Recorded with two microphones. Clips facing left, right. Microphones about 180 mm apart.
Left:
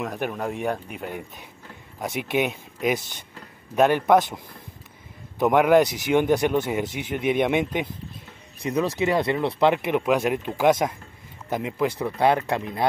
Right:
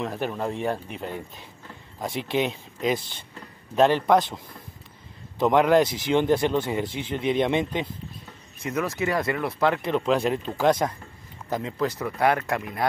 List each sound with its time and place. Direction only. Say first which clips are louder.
0.2 s speech: left 1 dB; 10° left (ahead or behind)
5.4 s speech: left 1 dB; 10° left (ahead or behind)
8.9 s speech: left 3 dB; 20° left (ahead or behind)